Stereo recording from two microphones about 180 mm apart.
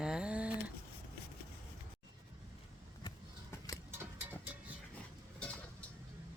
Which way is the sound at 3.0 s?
20° left (ahead or behind).